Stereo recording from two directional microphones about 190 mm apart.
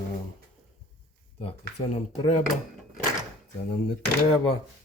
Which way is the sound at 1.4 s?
30° left (ahead or behind).